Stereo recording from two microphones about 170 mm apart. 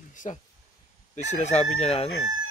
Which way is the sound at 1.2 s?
45° left (ahead or behind).